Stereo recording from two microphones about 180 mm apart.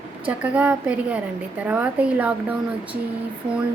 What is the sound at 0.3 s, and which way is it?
A woman's voice, 5° right (ahead or behind).